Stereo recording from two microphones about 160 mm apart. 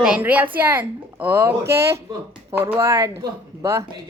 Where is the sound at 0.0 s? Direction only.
10° right (ahead or behind).